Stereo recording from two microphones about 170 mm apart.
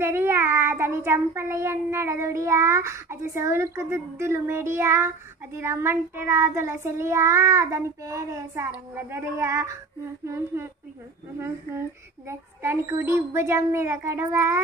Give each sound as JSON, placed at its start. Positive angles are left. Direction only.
{"t": 0.0, "sound": "child singing", "side_deg": -15}